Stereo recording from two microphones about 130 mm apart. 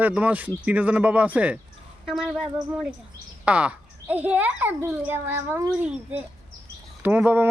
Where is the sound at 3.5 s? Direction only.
10° right (ahead or behind).